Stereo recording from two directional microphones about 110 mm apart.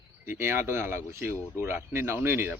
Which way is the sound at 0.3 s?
20° right (ahead or behind).